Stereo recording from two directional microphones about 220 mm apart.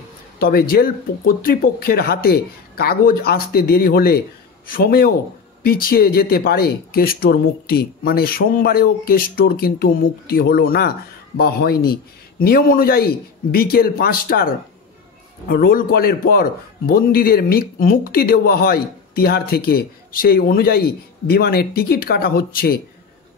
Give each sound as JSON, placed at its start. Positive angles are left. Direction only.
{"t": 0.4, "sound": "a man's voice", "side_deg": 45}